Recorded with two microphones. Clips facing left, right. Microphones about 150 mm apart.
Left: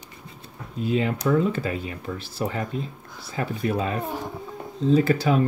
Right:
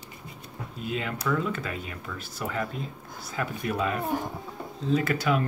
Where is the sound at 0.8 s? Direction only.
30° left (ahead or behind).